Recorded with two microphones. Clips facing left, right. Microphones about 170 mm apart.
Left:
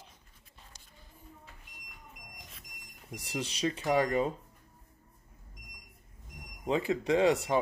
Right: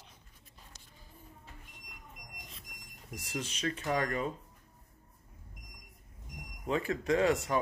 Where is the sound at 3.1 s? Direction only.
30° left (ahead or behind).